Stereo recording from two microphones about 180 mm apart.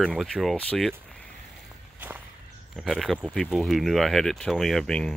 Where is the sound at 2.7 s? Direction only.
Centre (ahead or behind).